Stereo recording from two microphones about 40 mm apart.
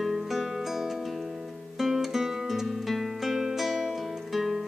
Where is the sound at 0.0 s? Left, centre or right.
Centre.